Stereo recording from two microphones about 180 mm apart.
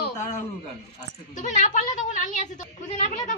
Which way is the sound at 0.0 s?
45° left (ahead or behind).